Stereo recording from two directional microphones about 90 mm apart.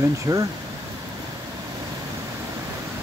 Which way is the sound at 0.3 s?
40° right (ahead or behind).